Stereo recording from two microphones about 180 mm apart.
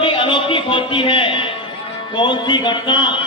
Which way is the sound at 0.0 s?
30° left (ahead or behind).